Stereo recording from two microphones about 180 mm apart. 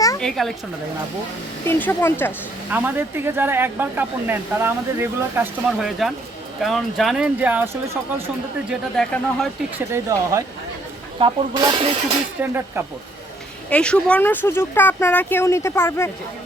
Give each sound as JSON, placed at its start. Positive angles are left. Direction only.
{"t": 0.2, "sound": "a woman's voice", "side_deg": 0}
{"t": 1.6, "sound": "speech", "side_deg": 15}
{"t": 2.7, "sound": "speech", "side_deg": -10}
{"t": 8.7, "sound": "speech", "side_deg": 0}
{"t": 9.9, "sound": "speech", "side_deg": -15}
{"t": 12.4, "sound": "speech", "side_deg": -10}
{"t": 13.7, "sound": "speech", "side_deg": 5}